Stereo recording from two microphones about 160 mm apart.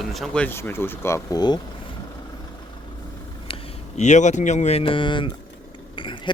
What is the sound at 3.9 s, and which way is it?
Speech, 45° left (ahead or behind).